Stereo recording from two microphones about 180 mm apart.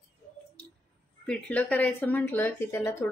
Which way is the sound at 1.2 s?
5° left (ahead or behind).